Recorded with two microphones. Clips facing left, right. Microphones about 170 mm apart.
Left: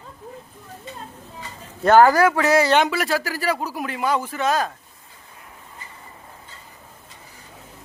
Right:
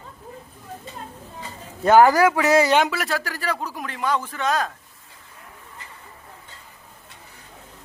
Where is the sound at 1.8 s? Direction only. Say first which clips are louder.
Even; 15° right (ahead or behind).